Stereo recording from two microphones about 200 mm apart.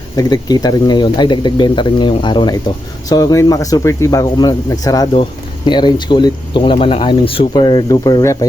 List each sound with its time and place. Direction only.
0.2 s speech: 20° left (ahead or behind)